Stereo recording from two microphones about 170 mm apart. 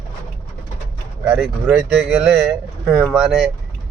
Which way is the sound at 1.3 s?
5° right (ahead or behind).